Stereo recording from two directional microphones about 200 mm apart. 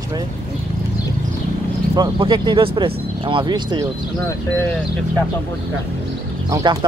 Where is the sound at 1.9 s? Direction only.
20° right (ahead or behind).